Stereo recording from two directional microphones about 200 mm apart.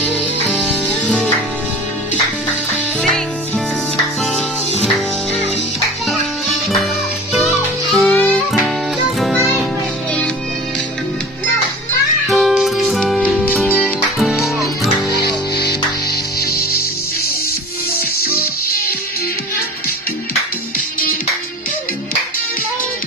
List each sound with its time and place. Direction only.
1.0 s music: 5° left (ahead or behind)
3.0 s music: centre (ahead or behind)
6.0 s music: centre (ahead or behind)
12.3 s music: centre (ahead or behind)
15.0 s music: 20° left (ahead or behind)